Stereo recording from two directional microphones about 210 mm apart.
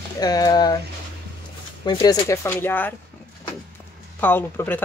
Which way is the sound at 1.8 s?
20° left (ahead or behind).